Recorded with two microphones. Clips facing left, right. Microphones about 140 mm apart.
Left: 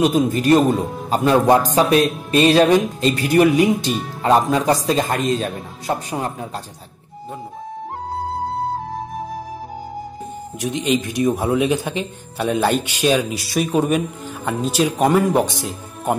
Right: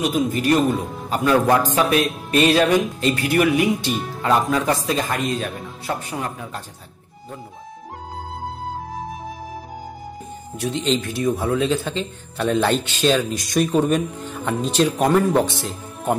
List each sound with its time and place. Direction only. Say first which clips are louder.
0.1 s a man's voice: left 4 dB; 35° left (ahead or behind)
10.6 s speech: left 2 dB; 15° left (ahead or behind)